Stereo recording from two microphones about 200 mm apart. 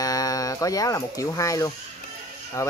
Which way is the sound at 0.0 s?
20° left (ahead or behind).